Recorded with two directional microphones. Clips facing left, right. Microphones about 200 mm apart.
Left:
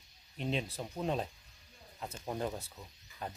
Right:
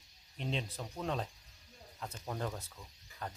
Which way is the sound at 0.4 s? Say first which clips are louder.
Left 3 dB; 10° left (ahead or behind).